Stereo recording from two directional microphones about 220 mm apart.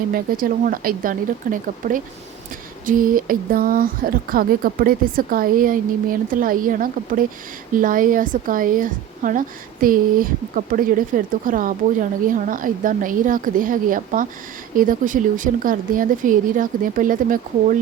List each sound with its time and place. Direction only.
0.1 s speech: 40° right (ahead or behind)